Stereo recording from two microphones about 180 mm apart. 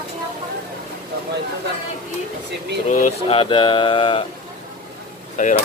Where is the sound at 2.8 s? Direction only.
45° left (ahead or behind).